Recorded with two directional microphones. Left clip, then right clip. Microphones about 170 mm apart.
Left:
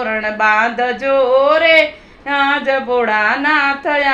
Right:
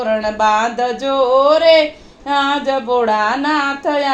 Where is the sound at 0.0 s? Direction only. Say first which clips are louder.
Even; 30° right (ahead or behind).